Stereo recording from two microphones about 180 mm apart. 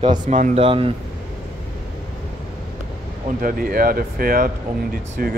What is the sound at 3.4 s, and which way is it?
Speech, 55° right (ahead or behind).